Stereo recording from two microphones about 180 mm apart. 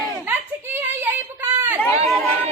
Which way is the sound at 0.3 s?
10° right (ahead or behind).